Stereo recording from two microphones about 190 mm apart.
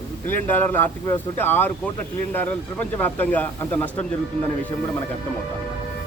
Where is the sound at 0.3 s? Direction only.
10° left (ahead or behind).